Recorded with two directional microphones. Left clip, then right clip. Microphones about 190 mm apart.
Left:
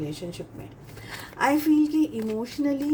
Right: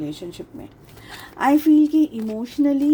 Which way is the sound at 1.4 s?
45° right (ahead or behind).